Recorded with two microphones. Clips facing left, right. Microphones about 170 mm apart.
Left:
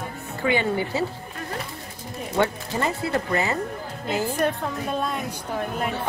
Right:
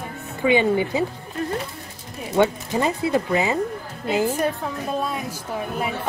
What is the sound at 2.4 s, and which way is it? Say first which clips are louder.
A woman's voice: right 4 dB; 20° right (ahead or behind).